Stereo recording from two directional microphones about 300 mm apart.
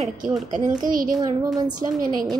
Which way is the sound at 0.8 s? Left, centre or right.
Right.